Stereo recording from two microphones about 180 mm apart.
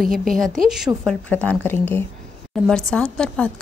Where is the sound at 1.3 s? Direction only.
10° left (ahead or behind).